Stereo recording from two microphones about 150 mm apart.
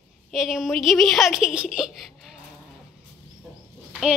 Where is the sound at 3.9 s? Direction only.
5° right (ahead or behind).